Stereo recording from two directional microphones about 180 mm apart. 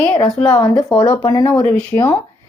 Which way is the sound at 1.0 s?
20° left (ahead or behind).